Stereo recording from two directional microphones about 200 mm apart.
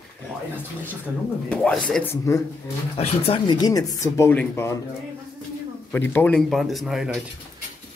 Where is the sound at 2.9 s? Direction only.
30° left (ahead or behind); by 4.8 s 15° left (ahead or behind).